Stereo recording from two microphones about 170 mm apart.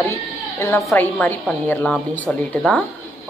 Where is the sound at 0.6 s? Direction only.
20° left (ahead or behind).